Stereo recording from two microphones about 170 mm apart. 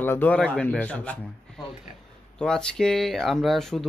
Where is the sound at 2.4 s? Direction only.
5° left (ahead or behind).